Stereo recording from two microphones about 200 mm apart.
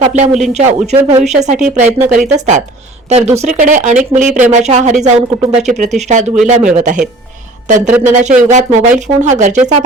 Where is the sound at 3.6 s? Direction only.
40° right (ahead or behind).